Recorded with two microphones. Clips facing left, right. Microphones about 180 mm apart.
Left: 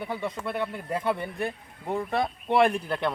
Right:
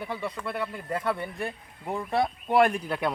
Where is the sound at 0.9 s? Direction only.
25° left (ahead or behind).